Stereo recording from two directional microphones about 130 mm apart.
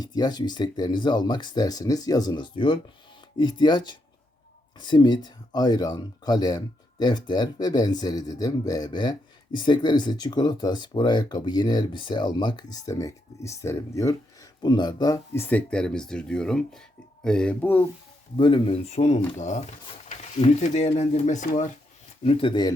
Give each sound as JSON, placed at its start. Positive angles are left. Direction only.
{"t": 0.0, "sound": "speech", "side_deg": 30}
{"t": 15.3, "sound": "speech", "side_deg": 15}
{"t": 18.3, "sound": "speech", "side_deg": 40}
{"t": 22.2, "sound": "speech", "side_deg": 45}